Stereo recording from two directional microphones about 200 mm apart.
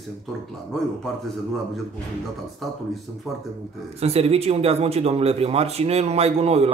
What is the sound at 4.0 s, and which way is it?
Speech, 30° right (ahead or behind).